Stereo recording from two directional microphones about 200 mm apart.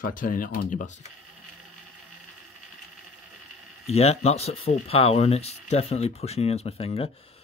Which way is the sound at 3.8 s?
30° left (ahead or behind).